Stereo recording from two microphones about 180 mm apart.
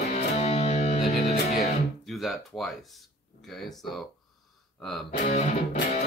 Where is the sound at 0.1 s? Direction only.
35° left (ahead or behind).